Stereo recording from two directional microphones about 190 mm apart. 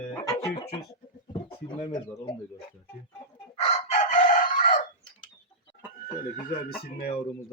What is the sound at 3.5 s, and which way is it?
Chicken, 35° left (ahead or behind).